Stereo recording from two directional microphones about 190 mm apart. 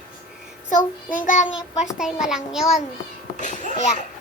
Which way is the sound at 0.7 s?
40° left (ahead or behind).